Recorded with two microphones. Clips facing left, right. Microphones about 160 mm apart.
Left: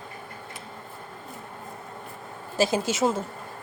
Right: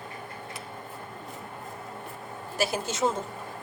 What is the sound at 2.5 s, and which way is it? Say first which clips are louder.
Speech: left 5 dB; 25° left (ahead or behind).